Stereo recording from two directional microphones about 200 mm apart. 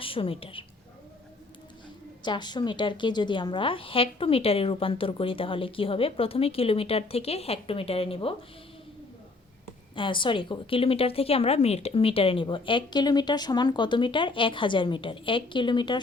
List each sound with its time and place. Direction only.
0.0 s a woman's voice: 25° left (ahead or behind)
2.2 s a woman's voice: 20° left (ahead or behind)
9.9 s a woman's voice: 25° left (ahead or behind)